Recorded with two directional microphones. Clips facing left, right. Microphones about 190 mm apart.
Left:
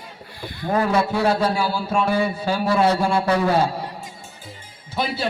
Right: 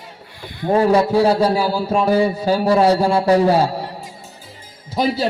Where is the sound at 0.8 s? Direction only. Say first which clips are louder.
Right 6 dB; 35° right (ahead or behind).